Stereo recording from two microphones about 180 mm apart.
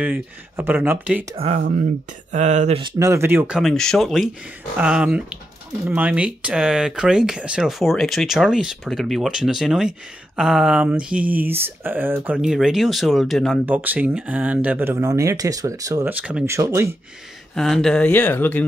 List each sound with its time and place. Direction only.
0.0 s speech: 10° right (ahead or behind)
1.3 s speech: 35° right (ahead or behind)
2.8 s speech: 15° right (ahead or behind)
17.6 s speech: centre (ahead or behind)